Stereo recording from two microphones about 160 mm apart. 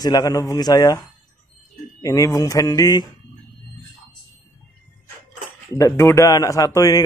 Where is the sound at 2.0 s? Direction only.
20° left (ahead or behind).